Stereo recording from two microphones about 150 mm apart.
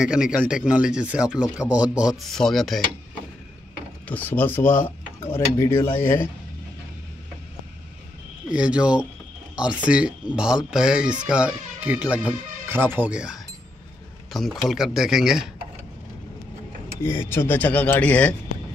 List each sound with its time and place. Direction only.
0.0 s speech: 5° right (ahead or behind)
4.1 s cutlery: 10° left (ahead or behind)
8.5 s speech: 5° right (ahead or behind)
17.0 s cutlery: 15° left (ahead or behind)